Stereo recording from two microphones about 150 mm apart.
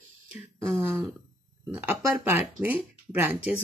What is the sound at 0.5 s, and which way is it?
Speech, 15° right (ahead or behind).